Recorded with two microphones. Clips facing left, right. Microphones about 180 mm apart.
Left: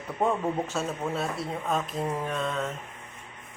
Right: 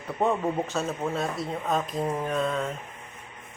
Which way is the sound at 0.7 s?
5° left (ahead or behind).